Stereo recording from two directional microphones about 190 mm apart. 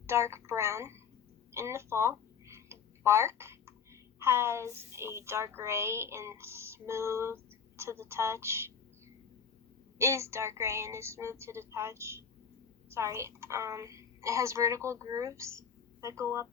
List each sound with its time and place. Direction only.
0.1 s a woman's voice: 15° right (ahead or behind)
1.5 s a sound: 15° right (ahead or behind)
4.2 s a woman's voice: 15° right (ahead or behind)
10.0 s a woman's voice: 15° right (ahead or behind)